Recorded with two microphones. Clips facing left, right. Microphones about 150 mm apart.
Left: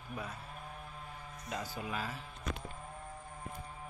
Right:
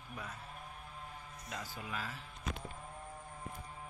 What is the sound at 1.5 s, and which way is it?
Speech, 30° left (ahead or behind).